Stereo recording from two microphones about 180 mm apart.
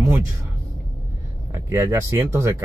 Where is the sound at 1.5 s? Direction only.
15° right (ahead or behind).